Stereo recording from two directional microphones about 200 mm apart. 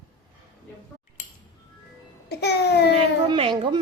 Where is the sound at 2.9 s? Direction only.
25° right (ahead or behind).